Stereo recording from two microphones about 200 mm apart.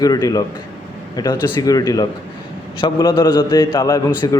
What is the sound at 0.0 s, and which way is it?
A man's voice, 20° left (ahead or behind).